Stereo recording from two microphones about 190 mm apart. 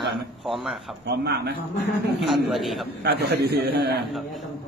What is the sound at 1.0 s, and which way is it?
Speech, 60° right (ahead or behind).